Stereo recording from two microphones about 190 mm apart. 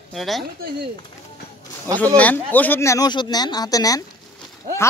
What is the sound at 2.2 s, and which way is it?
Speech, 10° left (ahead or behind).